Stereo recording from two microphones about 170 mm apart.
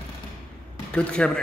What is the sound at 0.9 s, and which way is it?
Speech, 5° left (ahead or behind).